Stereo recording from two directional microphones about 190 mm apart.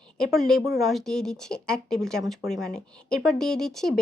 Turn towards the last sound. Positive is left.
turn(degrees=0)  # may be behind; listen again after turning